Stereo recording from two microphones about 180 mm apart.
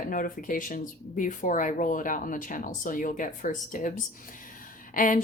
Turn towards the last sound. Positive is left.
turn(degrees=45)  # may be behind; listen again after turning